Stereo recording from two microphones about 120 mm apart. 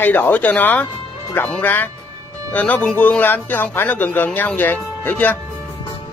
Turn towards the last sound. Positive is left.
turn(degrees=15)  # may be behind; listen again after turning